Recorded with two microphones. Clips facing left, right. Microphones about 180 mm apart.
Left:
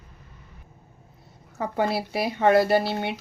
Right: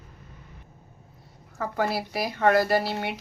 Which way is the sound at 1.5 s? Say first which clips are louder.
Left 2 dB; 20° left (ahead or behind).